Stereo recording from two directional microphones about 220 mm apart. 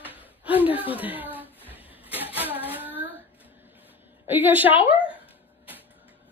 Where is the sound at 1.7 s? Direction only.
10° right (ahead or behind).